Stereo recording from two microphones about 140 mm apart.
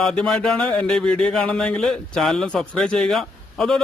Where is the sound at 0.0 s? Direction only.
5° left (ahead or behind).